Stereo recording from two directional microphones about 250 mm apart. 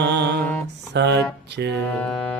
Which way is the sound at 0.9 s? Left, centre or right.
Right.